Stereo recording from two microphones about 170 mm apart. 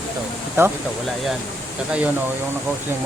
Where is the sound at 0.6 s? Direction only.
15° right (ahead or behind).